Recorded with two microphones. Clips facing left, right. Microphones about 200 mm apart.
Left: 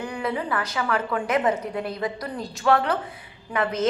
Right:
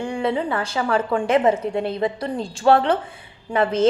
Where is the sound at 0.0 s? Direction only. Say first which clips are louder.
Right 5 dB; 30° right (ahead or behind).